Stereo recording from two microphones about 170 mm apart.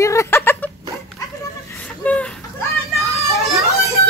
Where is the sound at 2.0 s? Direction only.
10° left (ahead or behind).